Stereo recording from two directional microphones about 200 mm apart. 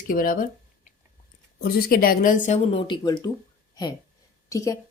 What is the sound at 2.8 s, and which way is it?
Speech, 20° left (ahead or behind).